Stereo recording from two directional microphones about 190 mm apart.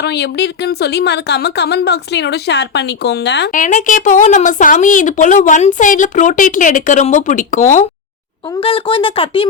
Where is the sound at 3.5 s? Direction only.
45° left (ahead or behind).